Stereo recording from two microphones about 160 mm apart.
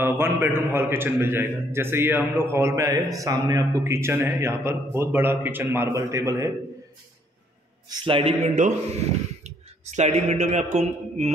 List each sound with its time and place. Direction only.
0.0 s a man's voice: 15° right (ahead or behind)
7.9 s a man's voice: 30° right (ahead or behind); by 8.7 s 50° right (ahead or behind)
9.8 s a man's voice: 45° right (ahead or behind)